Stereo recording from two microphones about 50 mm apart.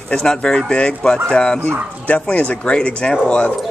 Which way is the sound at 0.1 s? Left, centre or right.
Centre.